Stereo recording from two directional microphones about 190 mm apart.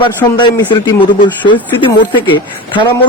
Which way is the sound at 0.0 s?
25° left (ahead or behind).